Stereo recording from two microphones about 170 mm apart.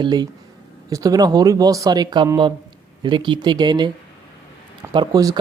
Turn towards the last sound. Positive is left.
turn(degrees=-25)  # may be behind; listen again after turning